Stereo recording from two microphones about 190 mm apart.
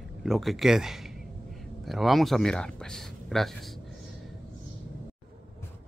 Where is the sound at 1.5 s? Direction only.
Centre (ahead or behind).